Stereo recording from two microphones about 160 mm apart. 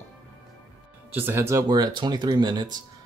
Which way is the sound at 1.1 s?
15° right (ahead or behind).